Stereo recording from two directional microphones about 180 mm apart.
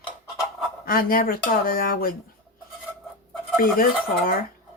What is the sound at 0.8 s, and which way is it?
Speech, 55° left (ahead or behind).